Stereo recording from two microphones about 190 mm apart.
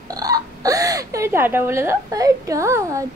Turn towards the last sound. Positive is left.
turn(degrees=-15)  # may be behind; listen again after turning